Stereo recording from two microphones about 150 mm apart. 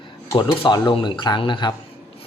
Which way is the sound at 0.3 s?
30° left (ahead or behind).